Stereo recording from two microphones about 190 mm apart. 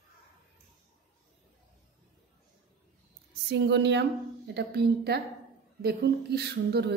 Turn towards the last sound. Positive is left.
turn(degrees=-60)  # may be behind; listen again after turning